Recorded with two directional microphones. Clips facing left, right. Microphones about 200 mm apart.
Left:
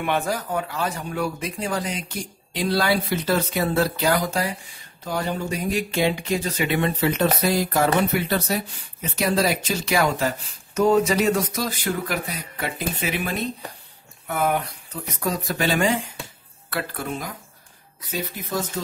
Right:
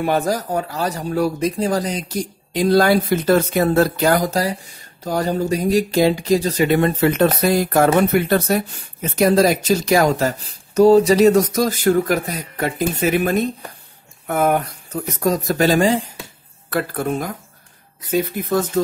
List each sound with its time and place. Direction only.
0.0 s speech: 40° right (ahead or behind)
16.9 s speech: 50° right (ahead or behind)